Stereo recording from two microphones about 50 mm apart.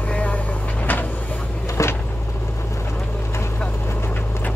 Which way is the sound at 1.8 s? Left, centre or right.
Left.